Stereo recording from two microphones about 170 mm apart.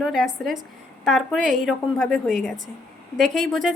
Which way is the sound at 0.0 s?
5° left (ahead or behind).